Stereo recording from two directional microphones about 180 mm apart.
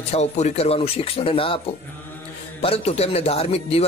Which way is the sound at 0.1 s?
40° left (ahead or behind).